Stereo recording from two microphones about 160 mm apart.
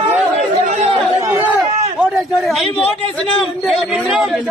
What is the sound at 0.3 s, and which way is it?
Chatter, 45° right (ahead or behind).